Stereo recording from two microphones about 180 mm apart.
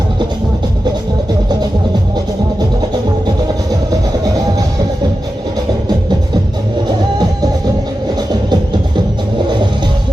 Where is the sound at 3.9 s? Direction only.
20° right (ahead or behind).